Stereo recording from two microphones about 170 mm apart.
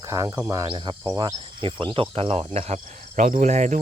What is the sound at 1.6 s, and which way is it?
Cricket, 30° right (ahead or behind).